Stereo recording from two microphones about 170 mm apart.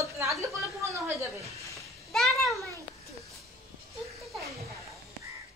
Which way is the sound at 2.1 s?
Centre (ahead or behind).